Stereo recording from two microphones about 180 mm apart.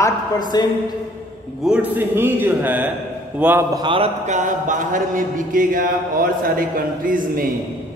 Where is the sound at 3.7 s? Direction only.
30° right (ahead or behind).